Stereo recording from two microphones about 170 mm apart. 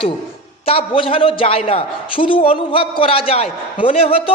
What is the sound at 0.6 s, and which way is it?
A man's voice, 35° left (ahead or behind).